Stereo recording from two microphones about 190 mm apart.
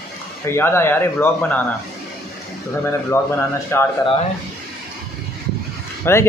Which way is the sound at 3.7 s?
15° left (ahead or behind).